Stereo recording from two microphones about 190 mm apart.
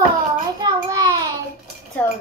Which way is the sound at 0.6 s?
20° right (ahead or behind).